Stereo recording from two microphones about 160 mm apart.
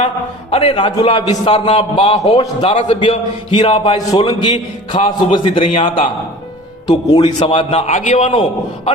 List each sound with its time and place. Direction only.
0.5 s a man's voice: 35° left (ahead or behind)
2.4 s a man's voice: 30° left (ahead or behind)
7.2 s a man's voice: 40° left (ahead or behind)